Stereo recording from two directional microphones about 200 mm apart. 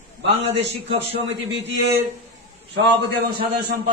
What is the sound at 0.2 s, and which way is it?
A man's voice, 30° right (ahead or behind).